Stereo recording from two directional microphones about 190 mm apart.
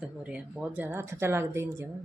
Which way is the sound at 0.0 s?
5° right (ahead or behind).